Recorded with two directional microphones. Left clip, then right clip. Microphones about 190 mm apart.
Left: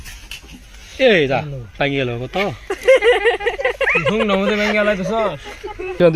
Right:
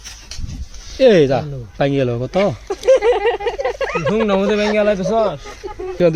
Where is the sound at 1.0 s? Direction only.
35° right (ahead or behind).